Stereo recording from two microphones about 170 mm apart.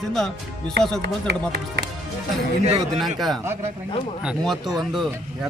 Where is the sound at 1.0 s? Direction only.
75° right (ahead or behind).